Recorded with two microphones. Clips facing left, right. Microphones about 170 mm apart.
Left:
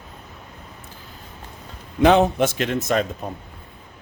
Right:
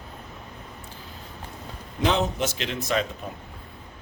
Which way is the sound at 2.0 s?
60° left (ahead or behind).